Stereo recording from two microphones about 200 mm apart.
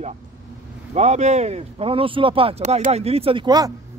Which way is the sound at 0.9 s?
35° right (ahead or behind).